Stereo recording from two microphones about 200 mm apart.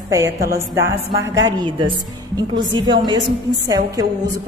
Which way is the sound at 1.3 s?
20° right (ahead or behind).